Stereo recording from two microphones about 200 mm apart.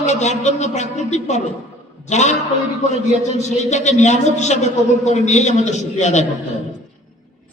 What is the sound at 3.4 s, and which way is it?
A man's voice, 35° left (ahead or behind).